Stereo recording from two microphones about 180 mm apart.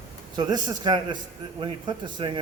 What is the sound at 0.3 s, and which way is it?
A man's voice, 25° right (ahead or behind).